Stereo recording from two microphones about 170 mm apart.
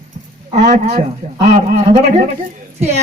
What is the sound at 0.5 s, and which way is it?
A man's voice, 45° right (ahead or behind).